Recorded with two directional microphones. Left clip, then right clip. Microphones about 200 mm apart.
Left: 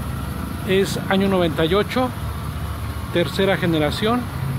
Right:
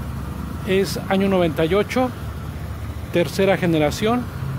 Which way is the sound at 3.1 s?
15° right (ahead or behind).